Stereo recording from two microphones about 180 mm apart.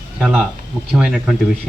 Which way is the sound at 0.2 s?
5° right (ahead or behind).